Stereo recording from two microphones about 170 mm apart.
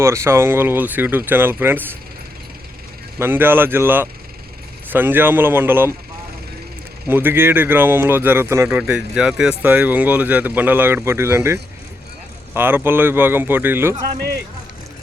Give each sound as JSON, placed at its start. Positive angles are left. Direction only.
{"t": 0.0, "sound": "speech", "side_deg": -15}
{"t": 3.2, "sound": "speech", "side_deg": -15}
{"t": 7.1, "sound": "speech", "side_deg": -10}
{"t": 14.2, "sound": "speech", "side_deg": -70}